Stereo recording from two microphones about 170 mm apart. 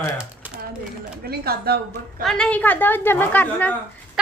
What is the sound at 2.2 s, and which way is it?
A woman's voice, 5° left (ahead or behind).